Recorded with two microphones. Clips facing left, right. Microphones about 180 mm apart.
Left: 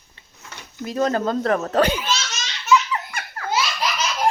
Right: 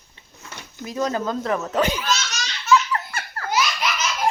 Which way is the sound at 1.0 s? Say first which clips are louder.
Left 3 dB; 50° left (ahead or behind).